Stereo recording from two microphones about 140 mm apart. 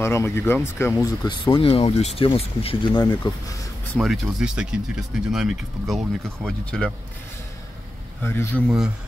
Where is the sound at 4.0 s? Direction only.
Centre (ahead or behind).